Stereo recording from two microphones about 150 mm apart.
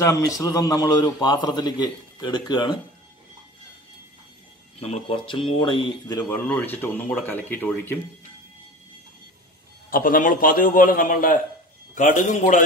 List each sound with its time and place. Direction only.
0.0 s a man's voice: 20° left (ahead or behind)
4.7 s speech: 45° left (ahead or behind)
6.3 s speech: 15° left (ahead or behind)
9.8 s a man's voice: 70° left (ahead or behind)